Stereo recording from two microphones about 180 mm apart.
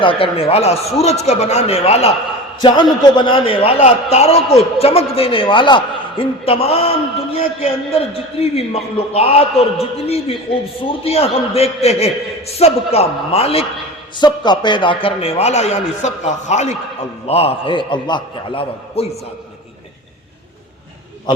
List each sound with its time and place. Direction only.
0.0 s a man's voice: 30° left (ahead or behind)